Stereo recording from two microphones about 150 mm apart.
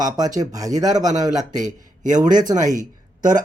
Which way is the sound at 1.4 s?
55° right (ahead or behind).